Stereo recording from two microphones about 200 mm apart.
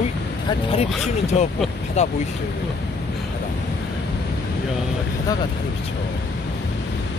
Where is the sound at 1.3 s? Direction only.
30° left (ahead or behind).